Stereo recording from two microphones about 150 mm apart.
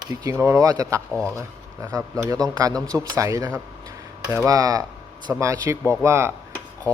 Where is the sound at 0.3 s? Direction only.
20° right (ahead or behind).